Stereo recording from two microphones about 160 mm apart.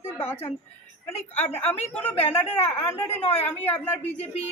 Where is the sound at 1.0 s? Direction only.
15° left (ahead or behind).